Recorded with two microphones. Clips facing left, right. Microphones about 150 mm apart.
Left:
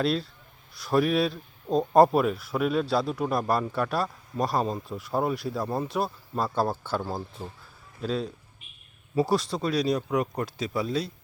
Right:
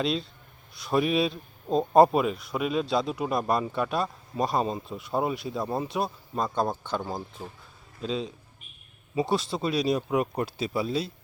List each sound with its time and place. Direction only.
0.0 s a man's voice: centre (ahead or behind)
9.6 s speech: 25° right (ahead or behind)